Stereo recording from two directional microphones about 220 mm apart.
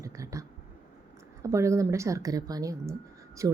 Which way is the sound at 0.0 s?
15° right (ahead or behind).